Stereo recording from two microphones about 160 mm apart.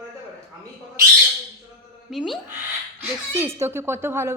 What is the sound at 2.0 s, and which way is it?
Speech, centre (ahead or behind).